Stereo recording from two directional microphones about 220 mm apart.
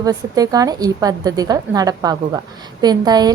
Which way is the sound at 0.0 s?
15° right (ahead or behind).